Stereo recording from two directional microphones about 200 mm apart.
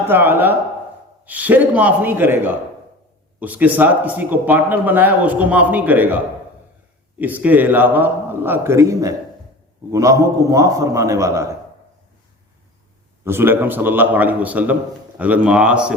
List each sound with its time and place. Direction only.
0.1 s a man's voice: 10° right (ahead or behind)
13.2 s a man's voice: 10° right (ahead or behind)